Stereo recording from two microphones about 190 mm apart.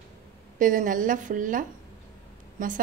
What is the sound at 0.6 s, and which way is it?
A woman's voice, 45° right (ahead or behind).